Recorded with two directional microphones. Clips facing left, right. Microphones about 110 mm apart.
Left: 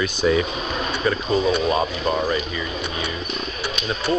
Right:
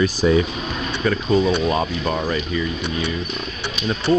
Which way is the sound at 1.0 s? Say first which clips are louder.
Right 3 dB; 15° left (ahead or behind).